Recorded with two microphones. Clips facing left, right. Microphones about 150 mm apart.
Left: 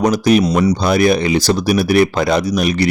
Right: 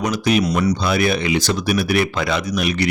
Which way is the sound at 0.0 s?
40° left (ahead or behind).